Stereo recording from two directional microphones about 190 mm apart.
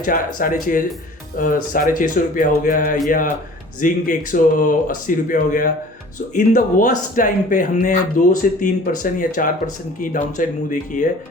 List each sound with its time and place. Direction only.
0.0 s speech: 45° left (ahead or behind)